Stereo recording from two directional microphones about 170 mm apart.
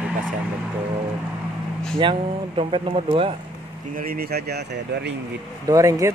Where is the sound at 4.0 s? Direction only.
60° right (ahead or behind).